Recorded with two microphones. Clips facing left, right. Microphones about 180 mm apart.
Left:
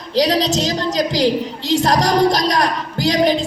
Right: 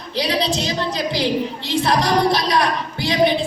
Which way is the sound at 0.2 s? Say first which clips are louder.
Left 5 dB; 40° left (ahead or behind).